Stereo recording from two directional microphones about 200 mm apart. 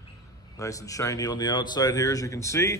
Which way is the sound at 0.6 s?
15° left (ahead or behind).